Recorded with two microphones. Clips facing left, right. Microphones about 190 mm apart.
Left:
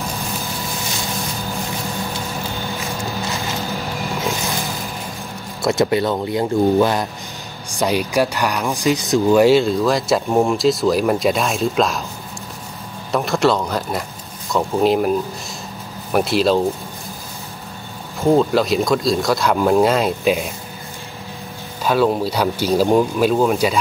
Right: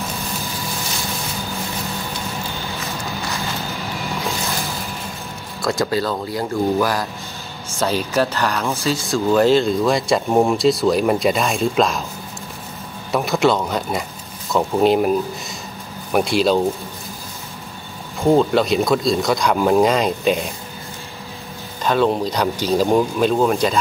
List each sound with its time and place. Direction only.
5.6 s speech: 20° left (ahead or behind); by 12.0 s centre (ahead or behind)
13.1 s speech: centre (ahead or behind)
18.2 s speech: centre (ahead or behind)
21.8 s speech: 5° left (ahead or behind)